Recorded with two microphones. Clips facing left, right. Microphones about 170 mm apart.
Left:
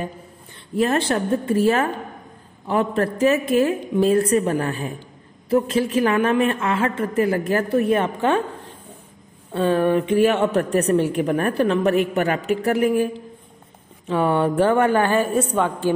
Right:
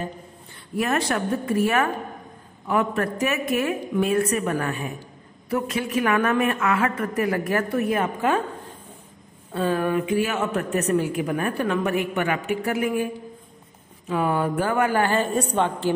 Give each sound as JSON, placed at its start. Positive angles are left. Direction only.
{"t": 0.7, "sound": "a woman's voice", "side_deg": 30}
{"t": 9.5, "sound": "a woman's voice", "side_deg": 25}